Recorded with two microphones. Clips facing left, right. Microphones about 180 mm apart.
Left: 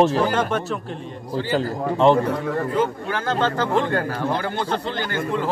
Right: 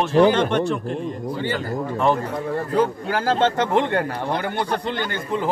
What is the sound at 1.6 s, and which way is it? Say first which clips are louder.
Speech: left 4 dB; 25° left (ahead or behind).